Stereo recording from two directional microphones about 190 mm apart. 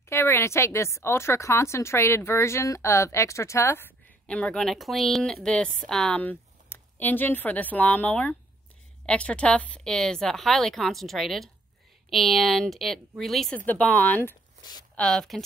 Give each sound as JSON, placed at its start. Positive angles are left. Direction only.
{"t": 0.1, "sound": "a woman's voice", "side_deg": 10}
{"t": 14.6, "sound": "a sound", "side_deg": 20}
{"t": 15.0, "sound": "a woman's voice", "side_deg": 5}